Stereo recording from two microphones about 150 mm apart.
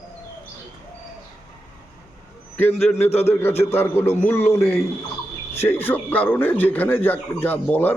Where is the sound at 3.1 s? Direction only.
45° left (ahead or behind).